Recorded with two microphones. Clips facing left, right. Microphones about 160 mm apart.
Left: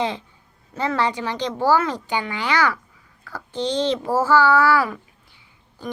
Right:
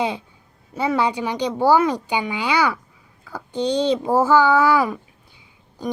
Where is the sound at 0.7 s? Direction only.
10° right (ahead or behind).